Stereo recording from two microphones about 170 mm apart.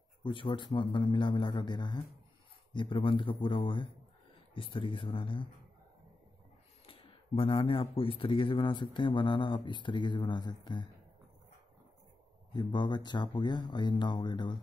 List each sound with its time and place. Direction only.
0.2 s speech: 30° left (ahead or behind)
6.9 s speech: 35° left (ahead or behind)
12.5 s speech: 25° left (ahead or behind)